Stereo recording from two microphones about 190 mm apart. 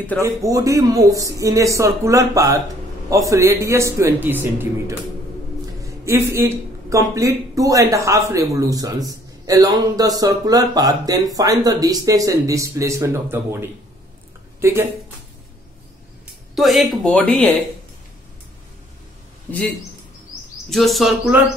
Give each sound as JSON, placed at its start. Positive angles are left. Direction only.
{"t": 0.2, "sound": "speech", "side_deg": -15}
{"t": 16.5, "sound": "speech", "side_deg": 0}
{"t": 20.7, "sound": "speech", "side_deg": 0}